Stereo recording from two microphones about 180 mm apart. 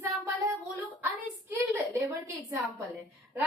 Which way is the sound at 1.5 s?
15° right (ahead or behind).